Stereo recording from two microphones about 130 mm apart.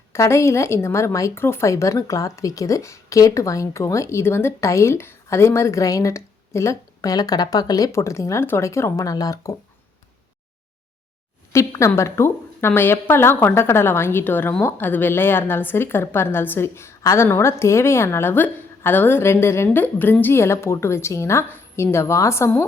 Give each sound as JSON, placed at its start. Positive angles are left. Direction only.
{"t": 0.1, "sound": "a woman's voice", "side_deg": 20}
{"t": 11.5, "sound": "a woman's voice", "side_deg": 25}